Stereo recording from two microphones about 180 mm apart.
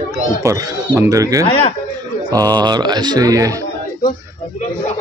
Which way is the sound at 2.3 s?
20° right (ahead or behind).